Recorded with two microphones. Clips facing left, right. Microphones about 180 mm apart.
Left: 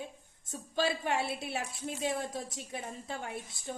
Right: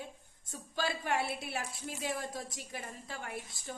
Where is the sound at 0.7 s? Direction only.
25° left (ahead or behind).